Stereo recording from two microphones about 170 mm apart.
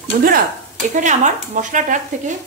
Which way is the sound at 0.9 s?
45° right (ahead or behind).